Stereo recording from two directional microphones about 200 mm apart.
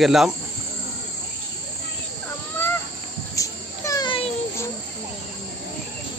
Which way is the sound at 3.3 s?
15° left (ahead or behind).